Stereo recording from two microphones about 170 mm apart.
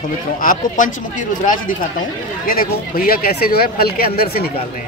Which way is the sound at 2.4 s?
60° left (ahead or behind).